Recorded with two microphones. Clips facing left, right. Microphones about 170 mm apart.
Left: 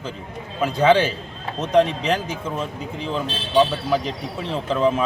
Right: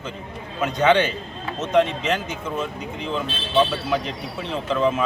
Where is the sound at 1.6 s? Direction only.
35° left (ahead or behind).